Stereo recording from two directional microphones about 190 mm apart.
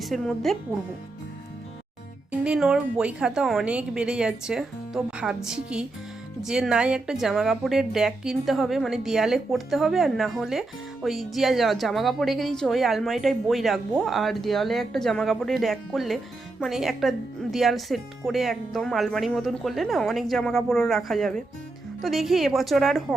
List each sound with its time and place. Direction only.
0.0 s a woman's voice: centre (ahead or behind)
2.4 s a woman's voice: 5° right (ahead or behind)